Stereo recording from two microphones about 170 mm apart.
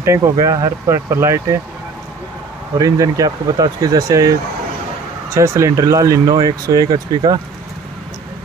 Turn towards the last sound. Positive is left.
turn(degrees=-25)  # may be behind; listen again after turning